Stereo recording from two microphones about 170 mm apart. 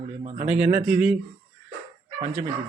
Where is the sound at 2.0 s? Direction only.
35° right (ahead or behind).